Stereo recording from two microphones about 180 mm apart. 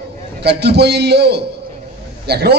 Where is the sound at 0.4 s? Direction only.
65° right (ahead or behind).